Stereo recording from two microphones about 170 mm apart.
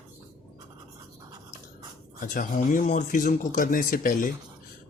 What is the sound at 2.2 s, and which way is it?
Speech, 50° left (ahead or behind).